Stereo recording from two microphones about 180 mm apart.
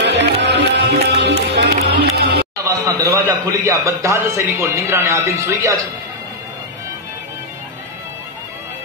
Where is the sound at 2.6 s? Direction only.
15° right (ahead or behind).